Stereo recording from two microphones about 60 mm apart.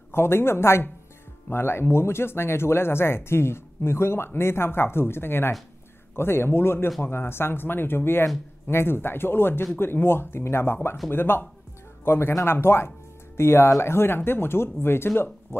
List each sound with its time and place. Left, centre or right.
0.1 s speech: left